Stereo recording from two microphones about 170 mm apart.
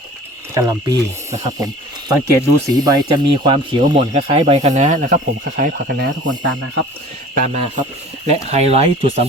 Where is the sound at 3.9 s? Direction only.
40° right (ahead or behind).